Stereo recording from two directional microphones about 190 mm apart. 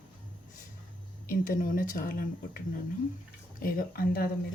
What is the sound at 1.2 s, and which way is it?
Speech, 45° left (ahead or behind).